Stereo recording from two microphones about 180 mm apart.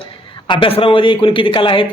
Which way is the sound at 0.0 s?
25° left (ahead or behind).